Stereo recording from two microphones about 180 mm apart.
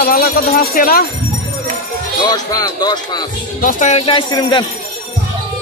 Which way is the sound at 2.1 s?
20° left (ahead or behind).